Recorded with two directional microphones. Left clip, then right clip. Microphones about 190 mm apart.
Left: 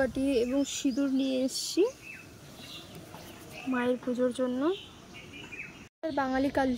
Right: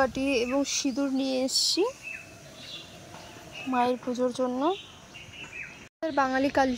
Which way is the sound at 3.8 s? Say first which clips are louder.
Right 2 dB; 15° left (ahead or behind).